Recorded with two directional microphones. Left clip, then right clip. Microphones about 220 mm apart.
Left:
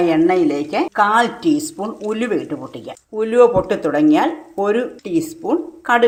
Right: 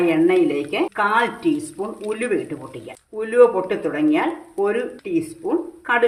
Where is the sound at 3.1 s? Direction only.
30° left (ahead or behind).